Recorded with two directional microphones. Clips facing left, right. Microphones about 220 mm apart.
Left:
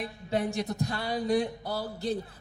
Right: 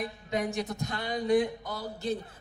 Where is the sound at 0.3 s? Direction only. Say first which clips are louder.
Left 2 dB; 30° left (ahead or behind).